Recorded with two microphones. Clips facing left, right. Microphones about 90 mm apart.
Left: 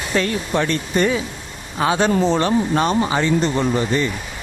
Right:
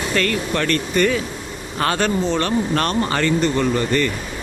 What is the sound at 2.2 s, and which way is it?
Speech, 30° left (ahead or behind).